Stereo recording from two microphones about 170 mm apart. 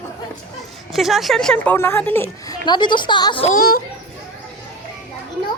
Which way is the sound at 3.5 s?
60° left (ahead or behind).